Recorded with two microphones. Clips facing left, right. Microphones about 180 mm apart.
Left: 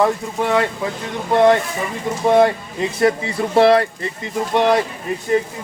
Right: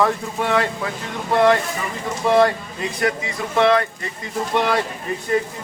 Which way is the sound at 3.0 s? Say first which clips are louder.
Left 6 dB; 30° left (ahead or behind).